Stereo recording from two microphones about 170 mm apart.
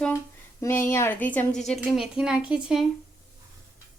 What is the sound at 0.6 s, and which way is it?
A woman's voice, 15° left (ahead or behind).